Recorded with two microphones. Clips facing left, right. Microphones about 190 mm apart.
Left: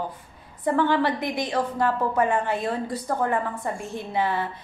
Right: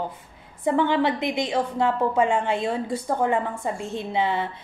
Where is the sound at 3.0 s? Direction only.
10° right (ahead or behind).